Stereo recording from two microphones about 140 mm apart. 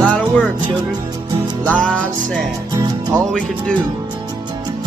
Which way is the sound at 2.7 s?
25° right (ahead or behind).